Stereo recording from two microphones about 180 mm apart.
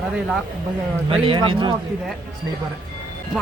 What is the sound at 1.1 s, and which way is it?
Speech, 30° right (ahead or behind).